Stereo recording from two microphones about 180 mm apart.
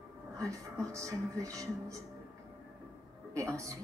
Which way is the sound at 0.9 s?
15° right (ahead or behind).